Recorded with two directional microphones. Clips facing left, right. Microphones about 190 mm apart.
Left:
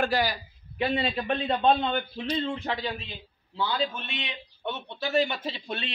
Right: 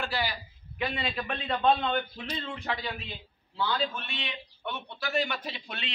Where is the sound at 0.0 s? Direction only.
45° left (ahead or behind); by 2.9 s 25° left (ahead or behind).